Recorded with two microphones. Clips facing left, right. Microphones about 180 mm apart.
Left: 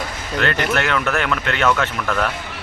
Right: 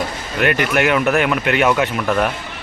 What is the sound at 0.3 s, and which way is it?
Speech, 15° right (ahead or behind).